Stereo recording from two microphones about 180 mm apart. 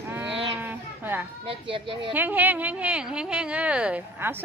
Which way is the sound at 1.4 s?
30° right (ahead or behind).